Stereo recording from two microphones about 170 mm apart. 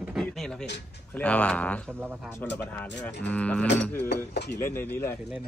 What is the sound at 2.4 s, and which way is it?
Speech, 90° left.